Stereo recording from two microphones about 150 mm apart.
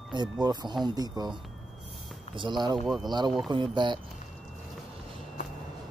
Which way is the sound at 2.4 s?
30° right (ahead or behind).